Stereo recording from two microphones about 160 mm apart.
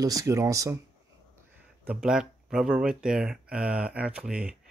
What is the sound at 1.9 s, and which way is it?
Speech, 5° right (ahead or behind).